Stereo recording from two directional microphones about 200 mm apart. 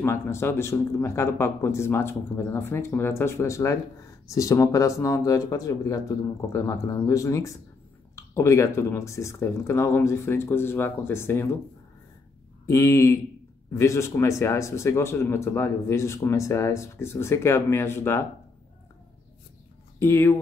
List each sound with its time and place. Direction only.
0.0 s speech: 15° left (ahead or behind)
12.6 s speech: 15° left (ahead or behind)
20.0 s speech: 10° left (ahead or behind)